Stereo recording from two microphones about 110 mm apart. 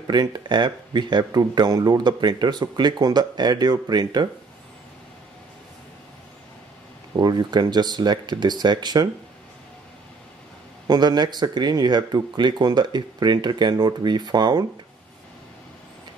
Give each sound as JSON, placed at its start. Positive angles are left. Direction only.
{"t": 0.0, "sound": "speech", "side_deg": -40}
{"t": 7.2, "sound": "speech", "side_deg": -40}
{"t": 10.9, "sound": "speech", "side_deg": -40}